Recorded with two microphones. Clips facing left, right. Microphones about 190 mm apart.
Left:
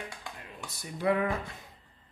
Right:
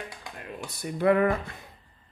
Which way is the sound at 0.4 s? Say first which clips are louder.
Right 7 dB; 60° right (ahead or behind).